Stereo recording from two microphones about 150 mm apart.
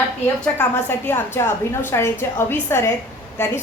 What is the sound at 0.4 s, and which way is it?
A woman's voice, 15° left (ahead or behind).